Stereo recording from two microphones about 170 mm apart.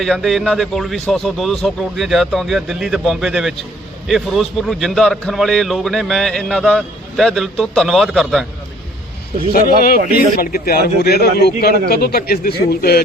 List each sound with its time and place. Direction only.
0.0 s a man's voice: centre (ahead or behind)
9.5 s speech: 60° left (ahead or behind)
11.0 s a man's voice: 70° left (ahead or behind)